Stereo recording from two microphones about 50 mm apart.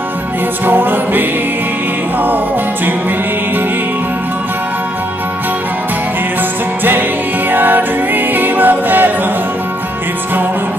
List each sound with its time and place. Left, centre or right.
0.7 s music: right
7.5 s music: right